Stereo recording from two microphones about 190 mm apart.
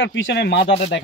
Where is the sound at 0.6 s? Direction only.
30° left (ahead or behind).